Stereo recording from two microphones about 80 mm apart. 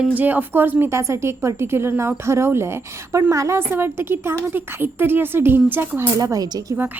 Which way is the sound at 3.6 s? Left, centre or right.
Right.